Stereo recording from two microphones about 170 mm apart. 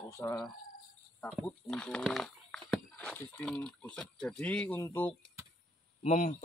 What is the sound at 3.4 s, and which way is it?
Speech, 5° left (ahead or behind).